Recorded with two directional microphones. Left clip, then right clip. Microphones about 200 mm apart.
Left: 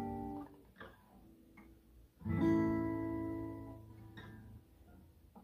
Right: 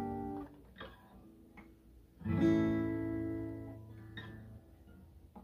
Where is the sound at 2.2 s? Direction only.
15° right (ahead or behind).